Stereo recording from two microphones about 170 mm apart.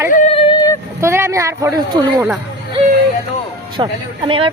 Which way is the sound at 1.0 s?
15° right (ahead or behind).